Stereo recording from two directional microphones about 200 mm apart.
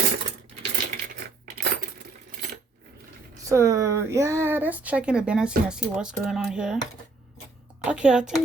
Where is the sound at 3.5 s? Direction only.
15° right (ahead or behind).